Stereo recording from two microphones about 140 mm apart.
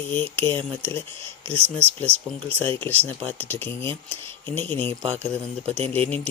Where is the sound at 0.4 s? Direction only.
15° left (ahead or behind).